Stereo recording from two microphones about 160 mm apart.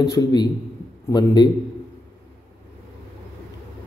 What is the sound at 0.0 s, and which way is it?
A man's voice, 20° left (ahead or behind).